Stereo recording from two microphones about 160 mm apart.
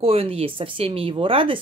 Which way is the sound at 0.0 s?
35° right (ahead or behind).